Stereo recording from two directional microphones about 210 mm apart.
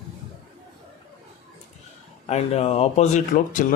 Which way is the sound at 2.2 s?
30° left (ahead or behind).